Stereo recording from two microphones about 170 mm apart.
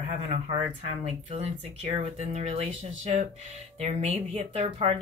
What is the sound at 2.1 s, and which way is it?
Speech, 40° right (ahead or behind).